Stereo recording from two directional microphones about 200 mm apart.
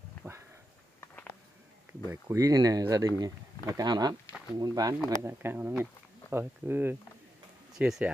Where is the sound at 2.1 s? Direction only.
15° right (ahead or behind).